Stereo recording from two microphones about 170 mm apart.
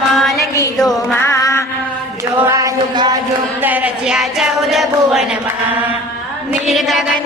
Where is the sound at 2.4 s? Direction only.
20° right (ahead or behind).